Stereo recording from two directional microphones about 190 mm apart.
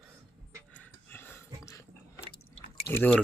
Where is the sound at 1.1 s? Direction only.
10° left (ahead or behind).